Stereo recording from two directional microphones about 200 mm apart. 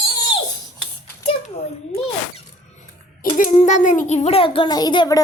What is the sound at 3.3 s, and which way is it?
A child's voice, 40° left (ahead or behind).